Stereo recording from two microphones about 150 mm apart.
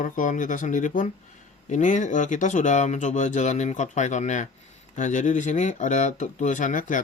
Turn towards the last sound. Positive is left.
turn(degrees=60)  # may be behind; listen again after turning